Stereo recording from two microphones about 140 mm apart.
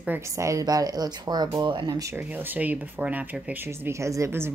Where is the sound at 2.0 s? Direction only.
20° right (ahead or behind).